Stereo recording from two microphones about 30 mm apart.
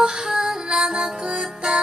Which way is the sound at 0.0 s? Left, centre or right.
Right.